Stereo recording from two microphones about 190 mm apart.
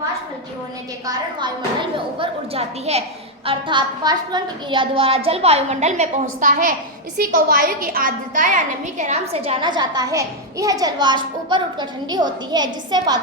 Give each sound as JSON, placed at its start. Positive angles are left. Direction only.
{"t": 1.0, "sound": "a woman's voice", "side_deg": -25}